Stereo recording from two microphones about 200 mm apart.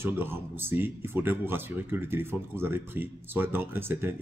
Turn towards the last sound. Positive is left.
turn(degrees=-10)  # may be behind; listen again after turning